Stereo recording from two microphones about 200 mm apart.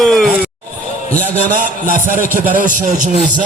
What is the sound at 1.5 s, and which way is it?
A man's voice, 40° right (ahead or behind).